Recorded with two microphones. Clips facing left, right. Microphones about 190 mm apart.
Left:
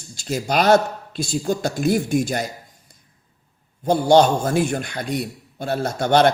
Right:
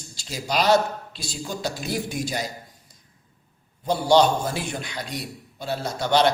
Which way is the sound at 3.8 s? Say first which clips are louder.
Left 4 dB; 50° left (ahead or behind).